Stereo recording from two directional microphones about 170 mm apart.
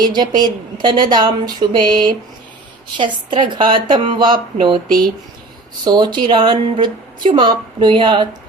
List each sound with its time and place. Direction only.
0.0 s a woman's voice: 25° right (ahead or behind)
5.8 s a woman's voice: 25° right (ahead or behind)